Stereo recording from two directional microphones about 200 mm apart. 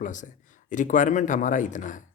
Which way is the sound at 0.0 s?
40° left (ahead or behind).